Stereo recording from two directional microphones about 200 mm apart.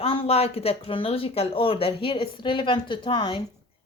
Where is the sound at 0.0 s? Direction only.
30° left (ahead or behind).